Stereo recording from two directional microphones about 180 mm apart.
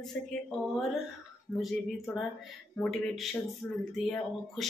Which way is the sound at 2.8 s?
Centre (ahead or behind).